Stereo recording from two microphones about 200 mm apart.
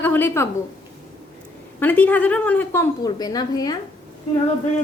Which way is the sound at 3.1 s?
20° left (ahead or behind).